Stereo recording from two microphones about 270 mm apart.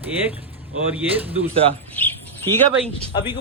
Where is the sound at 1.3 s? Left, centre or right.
Right.